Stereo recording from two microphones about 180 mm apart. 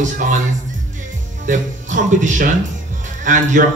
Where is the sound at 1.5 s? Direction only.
45° right (ahead or behind).